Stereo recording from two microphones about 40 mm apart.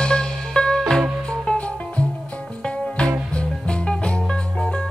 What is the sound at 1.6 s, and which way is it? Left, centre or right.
Music, left.